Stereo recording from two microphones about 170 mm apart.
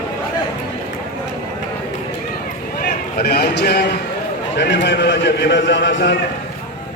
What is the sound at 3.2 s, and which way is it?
Speech, 70° left (ahead or behind).